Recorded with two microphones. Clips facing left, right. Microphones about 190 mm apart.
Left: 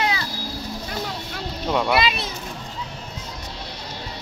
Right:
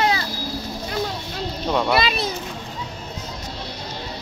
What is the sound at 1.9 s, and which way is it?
Speech, 40° right (ahead or behind).